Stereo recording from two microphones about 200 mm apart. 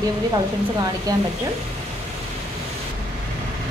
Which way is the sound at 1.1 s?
20° right (ahead or behind).